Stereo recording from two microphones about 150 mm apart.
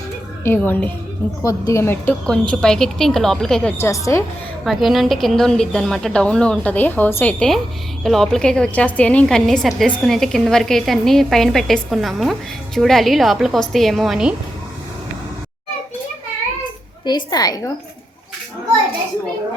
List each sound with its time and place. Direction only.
0.4 s a woman's voice: 15° left (ahead or behind)
3.8 s a woman's voice: 20° left (ahead or behind)
4.6 s a woman's voice: centre (ahead or behind)
17.1 s a woman's voice: 25° left (ahead or behind)